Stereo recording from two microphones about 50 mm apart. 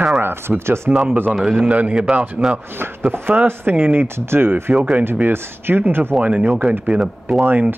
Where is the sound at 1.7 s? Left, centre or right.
Right.